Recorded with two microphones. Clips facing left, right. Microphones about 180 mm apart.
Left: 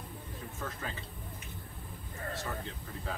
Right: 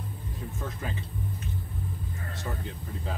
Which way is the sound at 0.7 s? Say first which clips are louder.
Right 4 dB; 15° right (ahead or behind).